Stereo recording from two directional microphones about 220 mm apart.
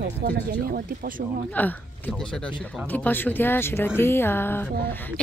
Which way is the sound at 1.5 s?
10° left (ahead or behind).